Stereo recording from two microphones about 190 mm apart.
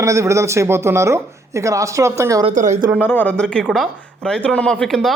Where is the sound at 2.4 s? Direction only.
40° right (ahead or behind).